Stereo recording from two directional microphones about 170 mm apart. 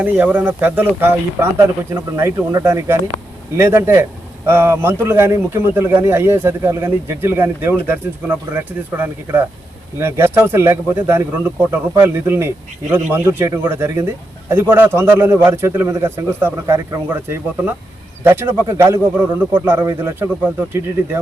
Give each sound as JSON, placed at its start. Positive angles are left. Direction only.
{"t": 0.0, "sound": "speech", "side_deg": -10}